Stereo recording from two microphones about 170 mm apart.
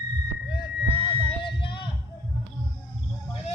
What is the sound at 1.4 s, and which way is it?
Music, 30° left (ahead or behind).